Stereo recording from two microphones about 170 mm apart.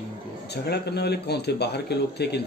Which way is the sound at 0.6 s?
75° left (ahead or behind).